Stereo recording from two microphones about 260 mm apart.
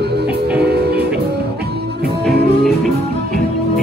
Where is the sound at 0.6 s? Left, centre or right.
Right.